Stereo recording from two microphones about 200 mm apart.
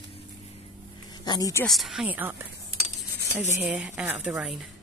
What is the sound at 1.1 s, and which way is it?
Speech, 20° left (ahead or behind).